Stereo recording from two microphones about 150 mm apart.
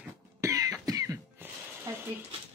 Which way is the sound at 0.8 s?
25° right (ahead or behind).